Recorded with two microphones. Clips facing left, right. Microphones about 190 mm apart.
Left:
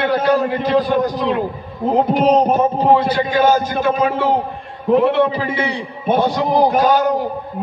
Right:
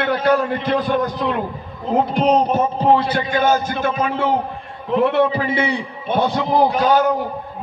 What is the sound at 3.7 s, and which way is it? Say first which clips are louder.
A man's voice: left 3 dB; 45° left (ahead or behind).